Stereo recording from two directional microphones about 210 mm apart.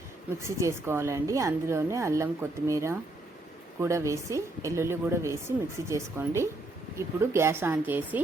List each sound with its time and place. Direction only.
0.4 s a woman's voice: 10° right (ahead or behind)